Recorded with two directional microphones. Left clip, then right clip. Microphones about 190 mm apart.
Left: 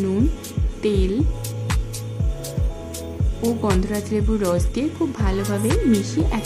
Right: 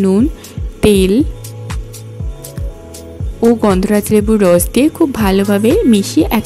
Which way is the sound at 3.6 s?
40° right (ahead or behind).